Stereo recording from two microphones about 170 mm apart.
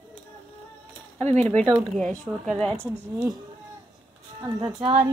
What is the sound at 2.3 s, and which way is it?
Speech, 15° right (ahead or behind).